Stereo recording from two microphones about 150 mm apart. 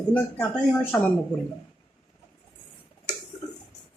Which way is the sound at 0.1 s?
10° left (ahead or behind).